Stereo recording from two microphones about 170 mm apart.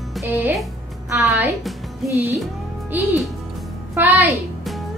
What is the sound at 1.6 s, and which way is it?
Music, centre (ahead or behind).